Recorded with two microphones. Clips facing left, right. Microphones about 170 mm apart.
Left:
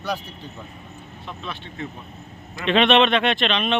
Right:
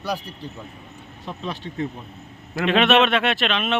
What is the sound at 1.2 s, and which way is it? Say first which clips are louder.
Speech: right 4 dB; 40° right (ahead or behind).